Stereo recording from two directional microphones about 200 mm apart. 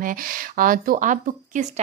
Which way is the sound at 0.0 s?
45° right (ahead or behind).